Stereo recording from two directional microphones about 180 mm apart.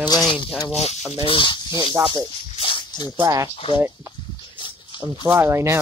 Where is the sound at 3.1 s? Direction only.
20° right (ahead or behind).